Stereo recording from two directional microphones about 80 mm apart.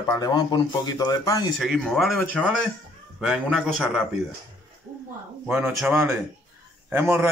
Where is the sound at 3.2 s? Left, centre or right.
Centre.